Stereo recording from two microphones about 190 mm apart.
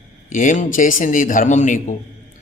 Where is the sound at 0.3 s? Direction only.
45° left (ahead or behind).